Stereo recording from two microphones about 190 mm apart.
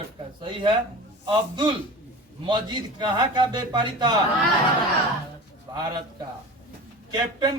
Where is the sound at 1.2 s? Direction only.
25° right (ahead or behind).